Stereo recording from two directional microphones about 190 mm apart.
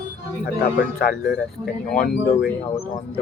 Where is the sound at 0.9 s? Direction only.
50° left (ahead or behind).